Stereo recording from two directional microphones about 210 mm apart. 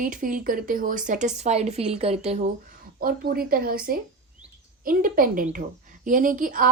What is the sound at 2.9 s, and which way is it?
Speech, 45° right (ahead or behind).